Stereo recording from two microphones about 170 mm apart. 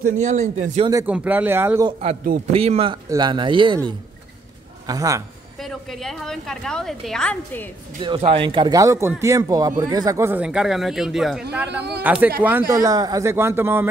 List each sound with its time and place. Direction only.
0.2 s speech: 45° right (ahead or behind)
1.0 s speech: 10° right (ahead or behind)
1.9 s speech: 40° right (ahead or behind)
4.8 s speech: 20° right (ahead or behind)
5.6 s a woman's voice: centre (ahead or behind)
8.0 s speech: 30° right (ahead or behind); by 12.7 s 10° right (ahead or behind)
12.8 s speech: 20° right (ahead or behind)